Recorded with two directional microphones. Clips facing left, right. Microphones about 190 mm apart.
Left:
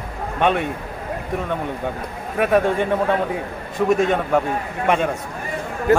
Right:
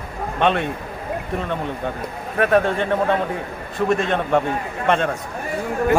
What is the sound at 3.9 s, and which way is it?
Speech, 10° left (ahead or behind).